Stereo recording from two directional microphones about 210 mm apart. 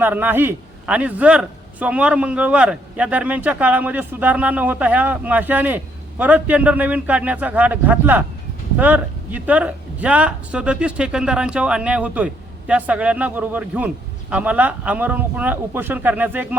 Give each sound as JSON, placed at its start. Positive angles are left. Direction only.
{"t": 0.0, "sound": "a man's voice", "side_deg": -10}